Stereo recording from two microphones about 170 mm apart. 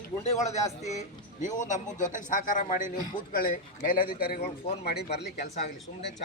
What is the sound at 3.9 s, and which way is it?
Speech, 60° left (ahead or behind).